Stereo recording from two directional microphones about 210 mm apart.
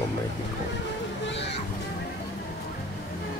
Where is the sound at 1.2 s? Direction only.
55° left (ahead or behind).